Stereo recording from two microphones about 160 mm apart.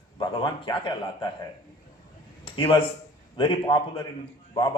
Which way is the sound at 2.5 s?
35° left (ahead or behind).